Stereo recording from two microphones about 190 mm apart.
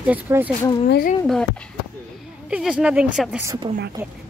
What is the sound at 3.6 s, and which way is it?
Speech, 25° right (ahead or behind).